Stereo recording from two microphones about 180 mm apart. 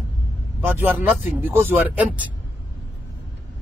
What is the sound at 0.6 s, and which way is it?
Speech, 10° right (ahead or behind).